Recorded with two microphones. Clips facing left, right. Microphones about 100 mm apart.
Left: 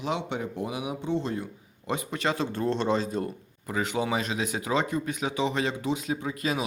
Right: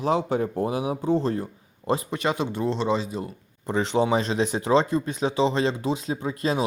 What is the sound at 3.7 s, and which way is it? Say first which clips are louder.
Speech: right 6 dB; 30° right (ahead or behind).